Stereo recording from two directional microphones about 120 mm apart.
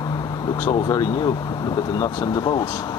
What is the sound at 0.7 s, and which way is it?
Speech, 35° left (ahead or behind).